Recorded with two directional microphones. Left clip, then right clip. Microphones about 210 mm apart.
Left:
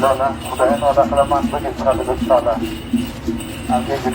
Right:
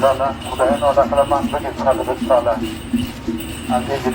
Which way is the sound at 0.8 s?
20° right (ahead or behind).